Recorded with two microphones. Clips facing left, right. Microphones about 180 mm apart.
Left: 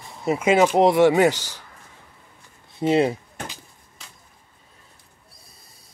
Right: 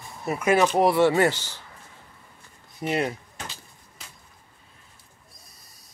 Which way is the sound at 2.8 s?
25° left (ahead or behind).